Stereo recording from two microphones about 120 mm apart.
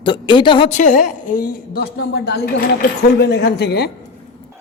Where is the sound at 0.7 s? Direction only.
90° left.